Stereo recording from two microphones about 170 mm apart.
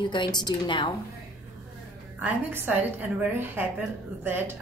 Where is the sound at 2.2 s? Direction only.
10° right (ahead or behind).